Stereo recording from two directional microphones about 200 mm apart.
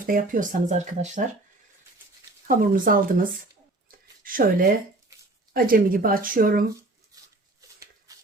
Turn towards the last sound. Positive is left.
turn(degrees=-45)  # may be behind; listen again after turning